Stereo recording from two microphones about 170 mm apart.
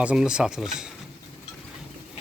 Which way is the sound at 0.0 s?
5° right (ahead or behind).